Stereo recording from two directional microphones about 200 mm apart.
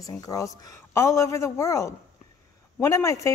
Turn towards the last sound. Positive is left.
turn(degrees=15)  # may be behind; listen again after turning